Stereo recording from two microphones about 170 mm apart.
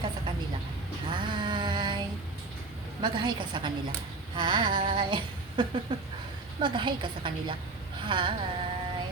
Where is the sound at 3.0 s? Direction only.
25° right (ahead or behind).